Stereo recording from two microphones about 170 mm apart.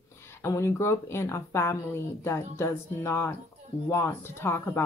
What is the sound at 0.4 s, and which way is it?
Speech, 15° left (ahead or behind).